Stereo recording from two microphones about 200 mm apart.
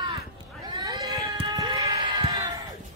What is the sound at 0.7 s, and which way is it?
Cat, 20° right (ahead or behind).